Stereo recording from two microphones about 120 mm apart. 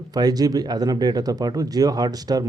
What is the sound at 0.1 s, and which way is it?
Speech, 35° right (ahead or behind).